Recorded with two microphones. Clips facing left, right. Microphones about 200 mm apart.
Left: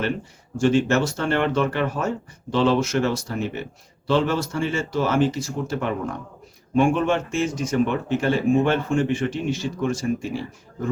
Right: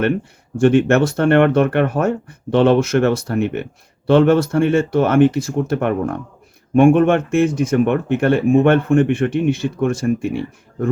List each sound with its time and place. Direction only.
0.5 s speech: 60° right (ahead or behind)